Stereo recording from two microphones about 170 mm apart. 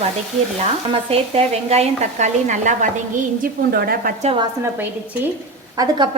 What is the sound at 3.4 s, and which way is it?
Speech, 60° right (ahead or behind).